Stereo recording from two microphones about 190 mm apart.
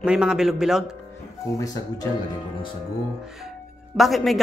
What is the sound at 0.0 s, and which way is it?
Speech, 5° right (ahead or behind).